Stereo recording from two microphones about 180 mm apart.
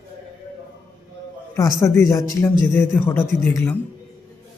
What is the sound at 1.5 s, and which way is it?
A man's voice, 20° left (ahead or behind).